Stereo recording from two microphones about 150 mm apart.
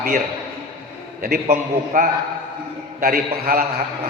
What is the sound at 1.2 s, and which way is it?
A man's voice, 75° right (ahead or behind).